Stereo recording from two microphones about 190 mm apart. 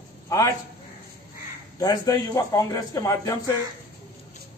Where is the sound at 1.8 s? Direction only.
20° left (ahead or behind).